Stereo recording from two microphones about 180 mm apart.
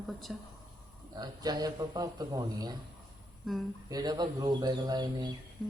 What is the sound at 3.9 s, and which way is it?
A man's voice, 20° right (ahead or behind).